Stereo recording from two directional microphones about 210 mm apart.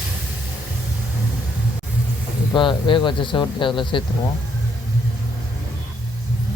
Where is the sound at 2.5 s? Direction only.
25° left (ahead or behind).